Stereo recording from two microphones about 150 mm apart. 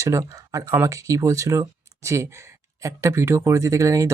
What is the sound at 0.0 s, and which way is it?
Speech, 20° right (ahead or behind).